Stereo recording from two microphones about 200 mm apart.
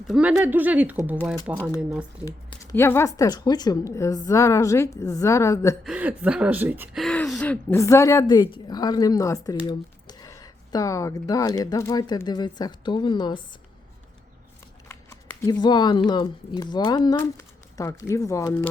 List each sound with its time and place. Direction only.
0.1 s speech: 5° right (ahead or behind)
2.2 s speech: 20° left (ahead or behind)
5.8 s speech: 5° right (ahead or behind)
7.0 s a woman's voice: 5° left (ahead or behind); by 13.4 s 20° left (ahead or behind)
14.8 s a sound: 10° left (ahead or behind)
16.0 s a woman's voice: 20° left (ahead or behind)